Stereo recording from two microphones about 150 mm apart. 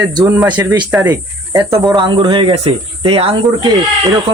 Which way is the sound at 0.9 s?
10° right (ahead or behind).